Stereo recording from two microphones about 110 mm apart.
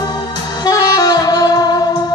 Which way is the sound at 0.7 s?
35° left (ahead or behind).